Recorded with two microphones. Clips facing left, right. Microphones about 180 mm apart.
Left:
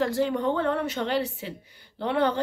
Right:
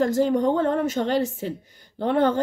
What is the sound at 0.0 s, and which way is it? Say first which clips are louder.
A woman's voice: right 5 dB; 45° right (ahead or behind).